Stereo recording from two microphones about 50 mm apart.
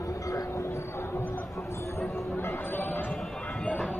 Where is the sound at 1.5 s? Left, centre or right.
Left.